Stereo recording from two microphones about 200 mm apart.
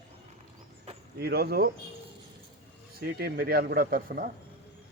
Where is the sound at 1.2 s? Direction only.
50° right (ahead or behind).